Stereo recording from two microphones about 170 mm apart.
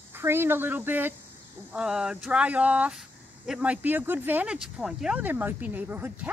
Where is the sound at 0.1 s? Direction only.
15° right (ahead or behind).